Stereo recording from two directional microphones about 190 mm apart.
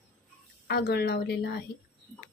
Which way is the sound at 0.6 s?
60° left (ahead or behind).